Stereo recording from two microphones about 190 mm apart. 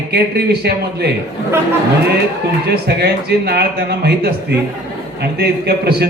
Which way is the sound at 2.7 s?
60° right (ahead or behind).